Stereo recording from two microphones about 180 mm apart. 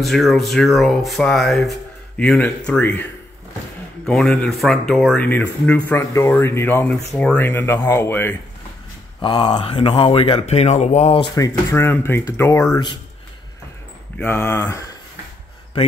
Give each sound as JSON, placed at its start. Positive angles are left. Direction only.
{"t": 0.0, "sound": "speech", "side_deg": 0}
{"t": 9.2, "sound": "speech", "side_deg": 30}
{"t": 11.3, "sound": "speech", "side_deg": 15}
{"t": 14.1, "sound": "speech", "side_deg": 10}